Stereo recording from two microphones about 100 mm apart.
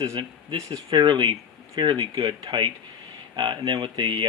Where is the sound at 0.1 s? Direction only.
50° right (ahead or behind).